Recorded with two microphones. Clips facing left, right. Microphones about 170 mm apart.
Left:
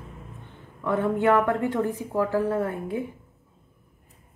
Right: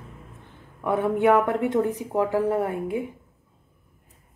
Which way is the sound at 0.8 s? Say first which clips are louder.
Right 2 dB; 15° right (ahead or behind).